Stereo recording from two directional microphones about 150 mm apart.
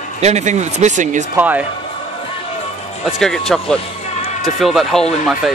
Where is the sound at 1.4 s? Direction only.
10° right (ahead or behind).